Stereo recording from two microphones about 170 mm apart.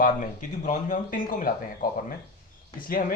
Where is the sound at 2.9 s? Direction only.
55° left (ahead or behind).